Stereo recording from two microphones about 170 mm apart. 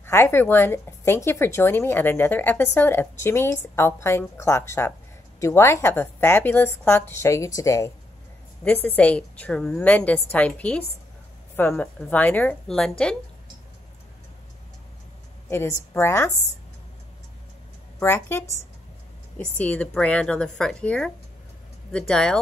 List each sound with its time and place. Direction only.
0.0 s a woman's voice: 15° left (ahead or behind)
15.5 s a woman's voice: 15° left (ahead or behind)
17.9 s a woman's voice: 15° left (ahead or behind)